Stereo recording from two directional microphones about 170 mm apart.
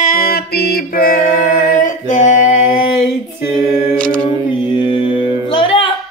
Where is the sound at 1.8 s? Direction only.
50° left (ahead or behind).